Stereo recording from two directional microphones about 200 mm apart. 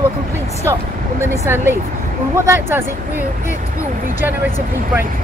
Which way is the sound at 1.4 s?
10° right (ahead or behind).